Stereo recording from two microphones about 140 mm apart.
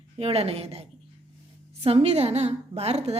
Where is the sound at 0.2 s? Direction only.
45° right (ahead or behind).